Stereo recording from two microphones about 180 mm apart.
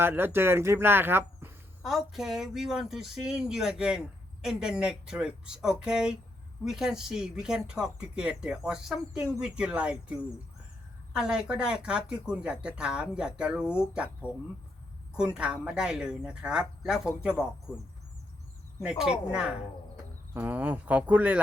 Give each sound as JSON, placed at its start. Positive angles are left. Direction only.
{"t": 0.0, "sound": "speech", "side_deg": -10}
{"t": 11.2, "sound": "speech", "side_deg": -5}
{"t": 15.1, "sound": "speech", "side_deg": -5}
{"t": 18.8, "sound": "speech", "side_deg": -5}